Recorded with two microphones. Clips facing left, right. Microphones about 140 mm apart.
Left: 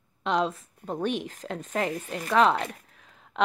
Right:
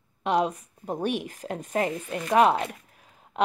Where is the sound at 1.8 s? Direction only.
50° right (ahead or behind).